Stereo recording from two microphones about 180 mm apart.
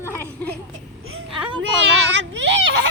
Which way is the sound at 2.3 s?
85° right.